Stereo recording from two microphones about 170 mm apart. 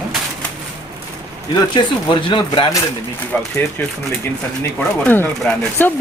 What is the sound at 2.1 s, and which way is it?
Speech, 30° left (ahead or behind).